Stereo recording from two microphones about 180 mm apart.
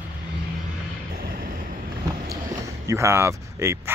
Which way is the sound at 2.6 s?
15° right (ahead or behind).